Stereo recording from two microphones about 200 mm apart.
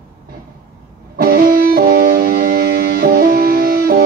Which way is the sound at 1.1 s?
50° right (ahead or behind).